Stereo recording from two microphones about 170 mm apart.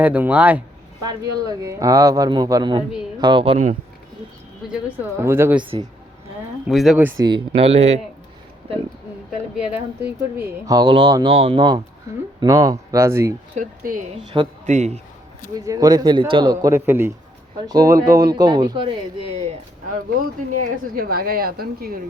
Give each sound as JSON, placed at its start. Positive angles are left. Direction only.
{"t": 0.0, "sound": "speech", "side_deg": -10}
{"t": 1.0, "sound": "speech", "side_deg": -20}
{"t": 5.2, "sound": "speech", "side_deg": -15}
{"t": 6.7, "sound": "speech", "side_deg": 0}
{"t": 7.2, "sound": "speech", "side_deg": -30}
{"t": 9.3, "sound": "speech", "side_deg": -5}
{"t": 10.7, "sound": "speech", "side_deg": -25}
{"t": 13.6, "sound": "speech", "side_deg": -50}
{"t": 14.3, "sound": "speech", "side_deg": -30}
{"t": 14.7, "sound": "speech", "side_deg": -40}
{"t": 15.6, "sound": "speech", "side_deg": -20}
{"t": 19.9, "sound": "speech", "side_deg": -55}